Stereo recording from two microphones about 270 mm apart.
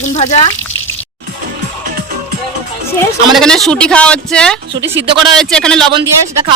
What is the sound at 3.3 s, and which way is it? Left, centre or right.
Speech, centre.